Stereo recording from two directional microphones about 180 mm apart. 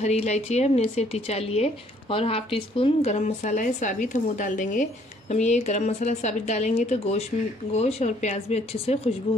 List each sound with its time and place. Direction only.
0.0 s a woman's voice: 35° left (ahead or behind)